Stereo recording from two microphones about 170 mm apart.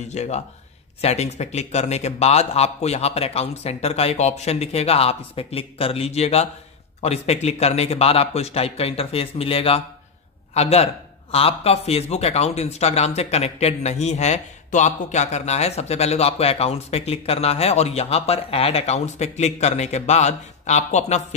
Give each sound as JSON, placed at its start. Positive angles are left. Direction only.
{"t": 0.1, "sound": "a man's voice", "side_deg": 40}